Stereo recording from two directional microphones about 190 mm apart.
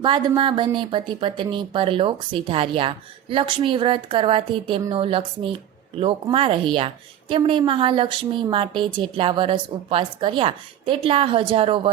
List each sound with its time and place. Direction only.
0.0 s a woman's voice: 25° right (ahead or behind)